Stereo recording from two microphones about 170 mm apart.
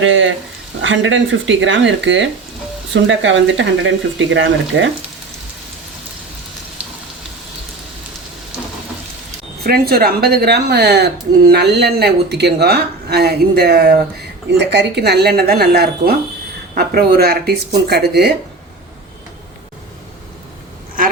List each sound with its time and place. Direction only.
0.1 s speech: 90° right
6.8 s frying: 10° right (ahead or behind)
9.6 s speech: 65° right (ahead or behind)
14.6 s speech: 90° right; by 18.3 s 70° right (ahead or behind)